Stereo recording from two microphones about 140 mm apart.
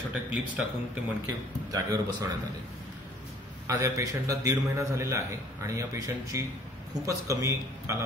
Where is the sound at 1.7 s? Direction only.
25° right (ahead or behind).